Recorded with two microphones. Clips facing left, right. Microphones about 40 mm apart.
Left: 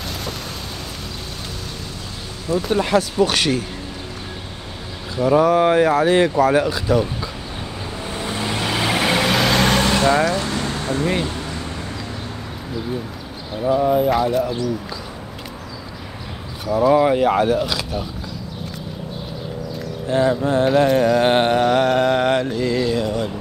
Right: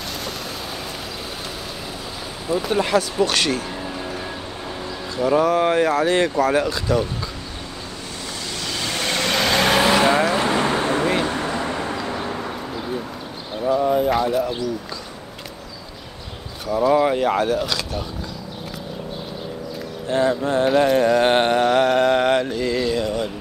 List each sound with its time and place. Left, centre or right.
2.6 s mantra: centre
5.1 s mantra: centre
8.3 s vehicle: left; by 10.3 s centre
10.3 s boat: right
11.2 s vehicle: right
11.7 s vehicle: right
13.6 s mantra: centre
16.6 s speech: centre
20.1 s mantra: centre